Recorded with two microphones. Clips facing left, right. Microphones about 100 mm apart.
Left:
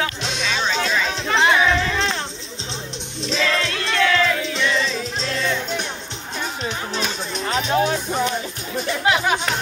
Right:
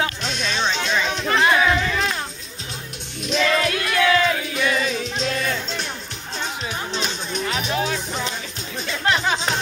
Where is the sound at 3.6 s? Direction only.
25° left (ahead or behind).